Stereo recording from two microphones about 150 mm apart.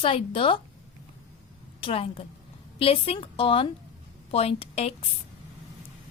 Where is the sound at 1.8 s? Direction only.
35° left (ahead or behind).